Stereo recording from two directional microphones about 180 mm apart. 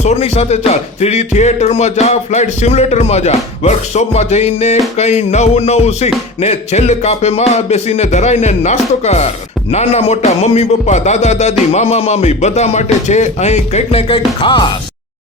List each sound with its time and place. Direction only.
0.0 s speech: 35° left (ahead or behind)